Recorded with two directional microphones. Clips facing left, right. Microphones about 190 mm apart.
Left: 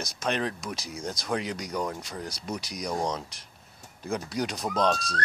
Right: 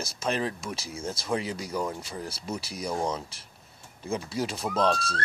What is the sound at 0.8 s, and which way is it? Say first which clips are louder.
Speech: even; 30° right (ahead or behind).